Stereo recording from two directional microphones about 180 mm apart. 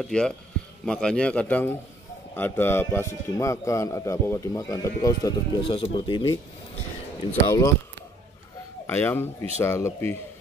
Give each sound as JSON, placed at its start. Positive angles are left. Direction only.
{"t": 0.0, "sound": "a man's voice", "side_deg": 5}
{"t": 5.6, "sound": "speech", "side_deg": 30}
{"t": 7.4, "sound": "speech", "side_deg": 20}
{"t": 8.8, "sound": "a man's voice", "side_deg": 10}